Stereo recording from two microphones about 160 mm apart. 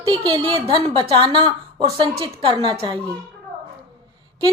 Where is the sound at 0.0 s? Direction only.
30° right (ahead or behind).